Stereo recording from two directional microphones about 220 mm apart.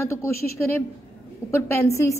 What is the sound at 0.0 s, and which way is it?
Speech, 10° left (ahead or behind).